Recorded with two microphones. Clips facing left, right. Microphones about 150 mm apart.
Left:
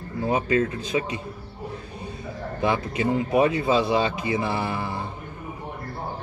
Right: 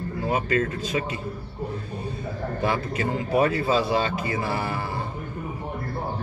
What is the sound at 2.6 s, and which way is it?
Speech, 20° left (ahead or behind).